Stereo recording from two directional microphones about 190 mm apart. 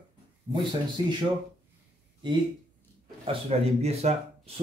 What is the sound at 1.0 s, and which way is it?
Speech, 25° right (ahead or behind).